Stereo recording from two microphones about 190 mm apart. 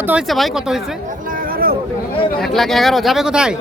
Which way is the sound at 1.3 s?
50° right (ahead or behind).